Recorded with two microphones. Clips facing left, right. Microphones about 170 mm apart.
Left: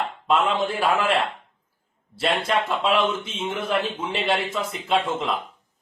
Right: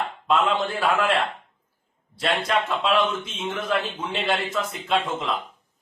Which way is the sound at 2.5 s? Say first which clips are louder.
Even; centre (ahead or behind).